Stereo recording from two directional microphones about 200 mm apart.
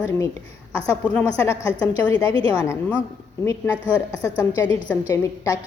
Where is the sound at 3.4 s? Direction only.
15° left (ahead or behind).